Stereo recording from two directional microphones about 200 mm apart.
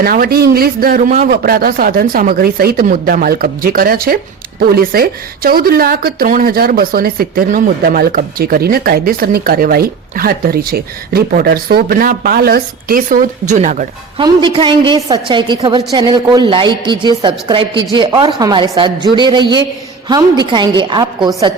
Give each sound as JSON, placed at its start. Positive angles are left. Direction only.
{"t": 0.0, "sound": "speech", "side_deg": -45}
{"t": 14.2, "sound": "a woman's voice", "side_deg": -25}